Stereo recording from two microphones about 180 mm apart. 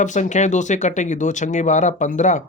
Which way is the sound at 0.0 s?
40° left (ahead or behind).